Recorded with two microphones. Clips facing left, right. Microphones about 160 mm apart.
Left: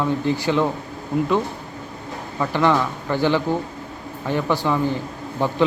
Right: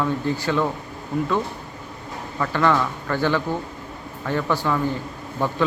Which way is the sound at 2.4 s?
15° left (ahead or behind).